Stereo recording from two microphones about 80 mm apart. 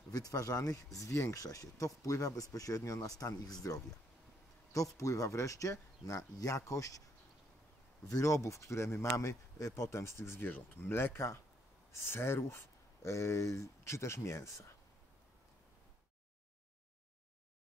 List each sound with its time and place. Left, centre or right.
0.1 s speech: left
4.9 s speech: left
8.1 s speech: left